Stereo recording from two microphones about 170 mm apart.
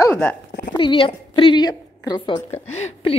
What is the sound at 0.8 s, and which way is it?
A woman's voice, 30° left (ahead or behind).